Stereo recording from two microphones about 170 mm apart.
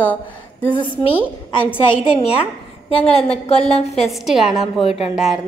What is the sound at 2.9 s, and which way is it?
A woman's voice, 35° left (ahead or behind).